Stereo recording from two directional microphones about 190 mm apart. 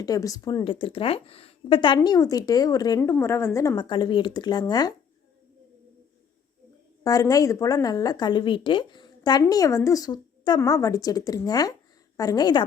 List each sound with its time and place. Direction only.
0.0 s speech: 20° left (ahead or behind)
7.0 s speech: 20° left (ahead or behind)